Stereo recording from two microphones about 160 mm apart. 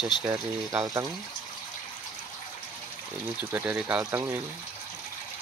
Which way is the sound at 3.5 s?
15° right (ahead or behind).